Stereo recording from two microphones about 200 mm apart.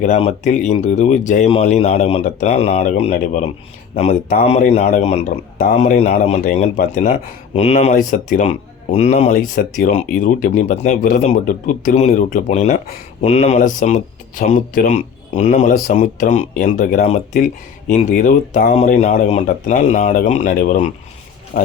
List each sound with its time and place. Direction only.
0.0 s speech: 35° left (ahead or behind)